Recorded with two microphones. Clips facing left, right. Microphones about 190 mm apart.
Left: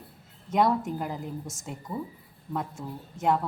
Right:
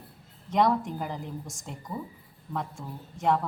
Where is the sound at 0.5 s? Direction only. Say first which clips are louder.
Even; 5° left (ahead or behind).